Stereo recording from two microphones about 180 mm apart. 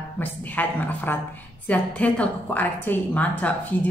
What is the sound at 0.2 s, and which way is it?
A woman's voice, 10° left (ahead or behind).